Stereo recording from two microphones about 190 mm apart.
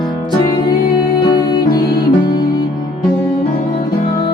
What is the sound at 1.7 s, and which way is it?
Music, 50° left (ahead or behind).